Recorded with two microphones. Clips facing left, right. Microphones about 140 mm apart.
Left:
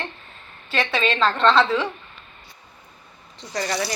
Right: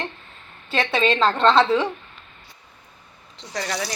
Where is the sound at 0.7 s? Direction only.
25° right (ahead or behind).